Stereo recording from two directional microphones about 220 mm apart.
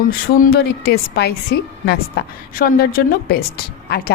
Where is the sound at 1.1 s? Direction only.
45° left (ahead or behind).